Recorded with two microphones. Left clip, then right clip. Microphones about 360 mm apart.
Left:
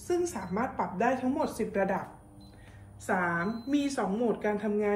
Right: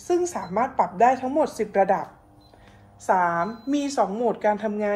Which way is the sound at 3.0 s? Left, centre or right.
Centre.